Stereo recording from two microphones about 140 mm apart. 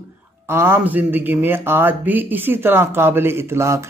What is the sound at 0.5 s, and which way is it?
A man's voice, 15° right (ahead or behind).